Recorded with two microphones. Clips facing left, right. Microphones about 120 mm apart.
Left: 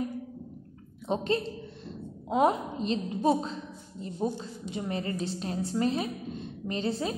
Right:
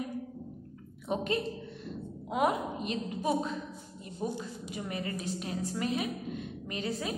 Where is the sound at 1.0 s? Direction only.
30° left (ahead or behind).